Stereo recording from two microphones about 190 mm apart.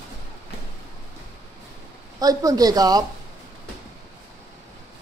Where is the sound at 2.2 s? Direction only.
20° right (ahead or behind).